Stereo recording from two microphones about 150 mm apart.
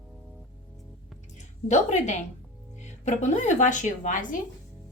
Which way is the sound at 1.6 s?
50° left (ahead or behind).